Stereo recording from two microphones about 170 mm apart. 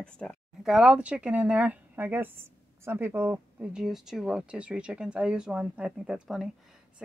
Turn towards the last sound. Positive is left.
turn(degrees=0)  # may be behind; listen again after turning